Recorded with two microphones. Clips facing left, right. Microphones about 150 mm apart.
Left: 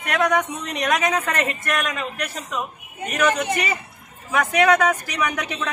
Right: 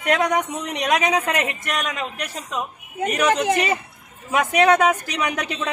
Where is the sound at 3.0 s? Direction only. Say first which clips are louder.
Right 2 dB; 90° right.